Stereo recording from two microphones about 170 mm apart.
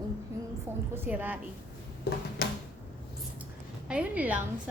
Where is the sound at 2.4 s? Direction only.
65° left (ahead or behind).